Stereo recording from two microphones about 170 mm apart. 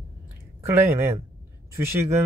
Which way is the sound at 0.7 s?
15° right (ahead or behind).